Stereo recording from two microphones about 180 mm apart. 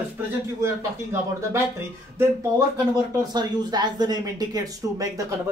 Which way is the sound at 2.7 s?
20° right (ahead or behind).